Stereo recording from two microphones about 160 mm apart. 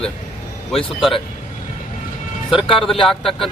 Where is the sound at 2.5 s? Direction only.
30° left (ahead or behind).